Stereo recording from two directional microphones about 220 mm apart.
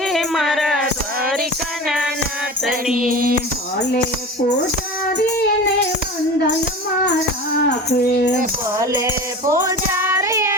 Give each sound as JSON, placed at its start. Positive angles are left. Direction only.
{"t": 0.1, "sound": "music", "side_deg": 0}
{"t": 2.9, "sound": "music", "side_deg": -40}
{"t": 7.9, "sound": "music", "side_deg": 50}
{"t": 8.8, "sound": "music", "side_deg": -15}